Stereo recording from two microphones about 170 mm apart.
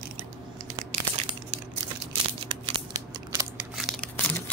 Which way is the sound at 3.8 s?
Centre (ahead or behind).